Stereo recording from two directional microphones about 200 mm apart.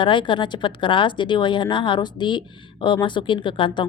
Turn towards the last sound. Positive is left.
turn(degrees=25)  # may be behind; listen again after turning